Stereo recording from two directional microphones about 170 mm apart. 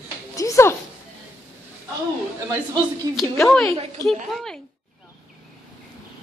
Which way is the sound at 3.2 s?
Centre (ahead or behind).